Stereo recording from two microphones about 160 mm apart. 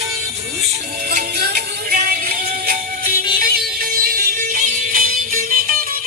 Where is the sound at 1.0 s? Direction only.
75° right (ahead or behind).